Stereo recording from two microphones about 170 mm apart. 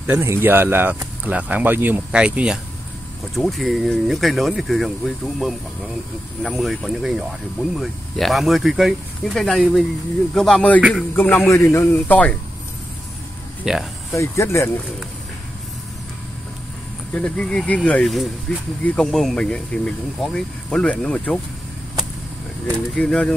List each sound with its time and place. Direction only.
0.0 s speech: 15° right (ahead or behind)
11.1 s a man's voice: 10° left (ahead or behind)
13.7 s speech: 5° right (ahead or behind)
14.1 s a man's voice: 15° left (ahead or behind)
17.1 s speech: 5° left (ahead or behind)
22.9 s speech: 5° left (ahead or behind)